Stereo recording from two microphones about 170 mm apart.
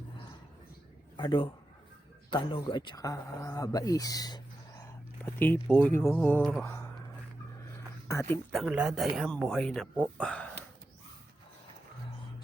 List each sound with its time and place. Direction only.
1.1 s a man's voice: 30° left (ahead or behind); by 6.7 s 5° left (ahead or behind)
8.0 s speech: 15° left (ahead or behind)
8.5 s speech: 5° right (ahead or behind)